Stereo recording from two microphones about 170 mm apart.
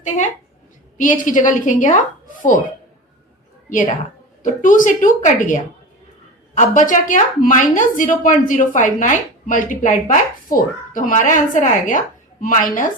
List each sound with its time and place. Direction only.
0.0 s a woman's voice: 45° left (ahead or behind)
3.7 s a woman's voice: 50° left (ahead or behind)